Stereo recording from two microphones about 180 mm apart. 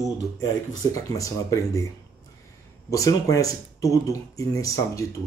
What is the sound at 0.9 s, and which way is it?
Speech, 20° left (ahead or behind).